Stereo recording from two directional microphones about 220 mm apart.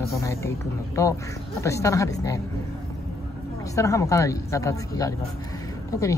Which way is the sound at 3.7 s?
15° left (ahead or behind).